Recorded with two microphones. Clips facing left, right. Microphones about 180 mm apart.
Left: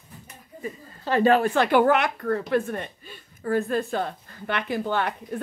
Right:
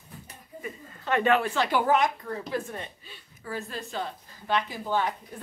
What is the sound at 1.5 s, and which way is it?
A woman's voice, 60° left (ahead or behind).